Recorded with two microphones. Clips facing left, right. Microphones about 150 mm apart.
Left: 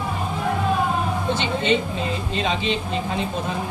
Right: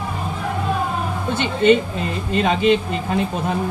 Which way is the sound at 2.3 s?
55° right (ahead or behind).